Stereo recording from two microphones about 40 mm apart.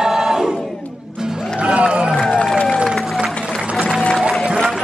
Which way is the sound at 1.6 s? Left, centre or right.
Right.